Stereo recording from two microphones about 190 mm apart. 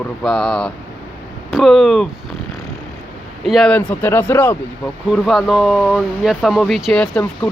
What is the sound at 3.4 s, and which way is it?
Speech, centre (ahead or behind).